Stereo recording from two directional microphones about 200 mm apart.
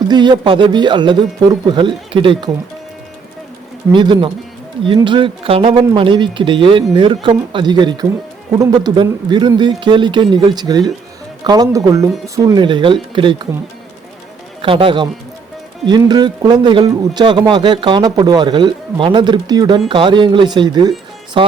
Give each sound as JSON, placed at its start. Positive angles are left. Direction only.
{"t": 0.1, "sound": "a man's voice", "side_deg": -20}
{"t": 3.9, "sound": "a man's voice", "side_deg": -25}
{"t": 14.6, "sound": "a man's voice", "side_deg": -25}